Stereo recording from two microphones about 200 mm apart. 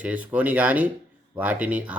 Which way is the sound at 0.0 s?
5° right (ahead or behind).